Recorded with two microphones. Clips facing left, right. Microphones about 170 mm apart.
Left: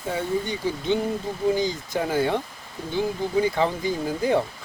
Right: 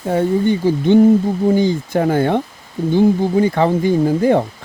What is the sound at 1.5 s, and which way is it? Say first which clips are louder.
Speech: right 9 dB; 60° right (ahead or behind).